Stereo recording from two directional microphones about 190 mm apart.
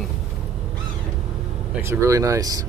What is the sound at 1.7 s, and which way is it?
Speech, 15° right (ahead or behind).